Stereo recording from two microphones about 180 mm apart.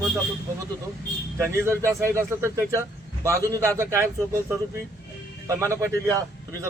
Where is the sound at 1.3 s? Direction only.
15° right (ahead or behind).